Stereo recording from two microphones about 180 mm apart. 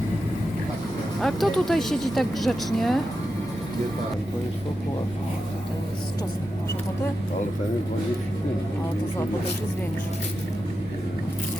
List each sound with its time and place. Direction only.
1.2 s speech: centre (ahead or behind)